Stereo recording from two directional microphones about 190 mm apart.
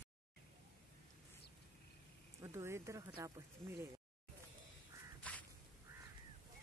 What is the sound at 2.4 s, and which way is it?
Speech, 15° right (ahead or behind).